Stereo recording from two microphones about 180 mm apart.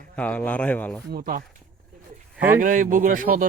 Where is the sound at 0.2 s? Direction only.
10° left (ahead or behind).